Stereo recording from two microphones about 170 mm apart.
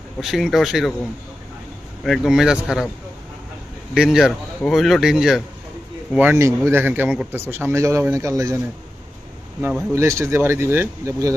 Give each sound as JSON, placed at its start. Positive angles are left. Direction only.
{"t": 0.2, "sound": "speech", "side_deg": 0}
{"t": 2.0, "sound": "speech", "side_deg": 0}
{"t": 3.9, "sound": "speech", "side_deg": -5}
{"t": 6.1, "sound": "speech", "side_deg": -15}
{"t": 9.9, "sound": "speech", "side_deg": -15}